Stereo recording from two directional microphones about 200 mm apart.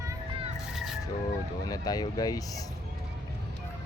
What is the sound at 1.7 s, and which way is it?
Speech, 20° left (ahead or behind).